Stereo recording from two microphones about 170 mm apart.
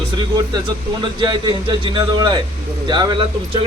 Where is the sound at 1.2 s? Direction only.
25° right (ahead or behind).